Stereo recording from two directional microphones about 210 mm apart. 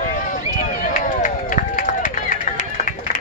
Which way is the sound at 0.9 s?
40° left (ahead or behind).